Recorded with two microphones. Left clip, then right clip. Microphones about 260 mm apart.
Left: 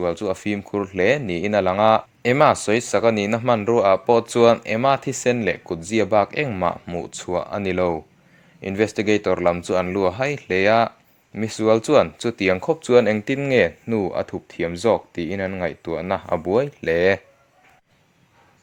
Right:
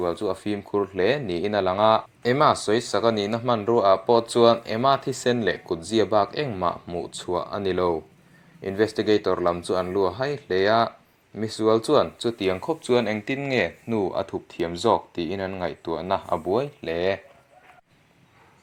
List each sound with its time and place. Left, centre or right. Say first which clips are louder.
0.0 s speech: left 3 dB; left
11.3 s speech: left 3 dB; left
11.9 s speech: left 4 dB; left